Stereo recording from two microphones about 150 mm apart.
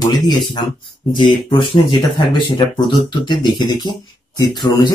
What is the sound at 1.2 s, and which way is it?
Speech, 35° left (ahead or behind).